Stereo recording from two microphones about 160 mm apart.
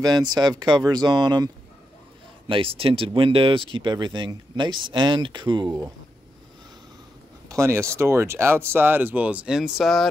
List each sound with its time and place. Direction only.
0.0 s speech: 25° right (ahead or behind)
7.4 s speech: 20° right (ahead or behind); by 10.0 s centre (ahead or behind)